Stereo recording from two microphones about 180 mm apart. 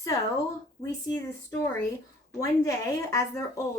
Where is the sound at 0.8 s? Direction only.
20° left (ahead or behind).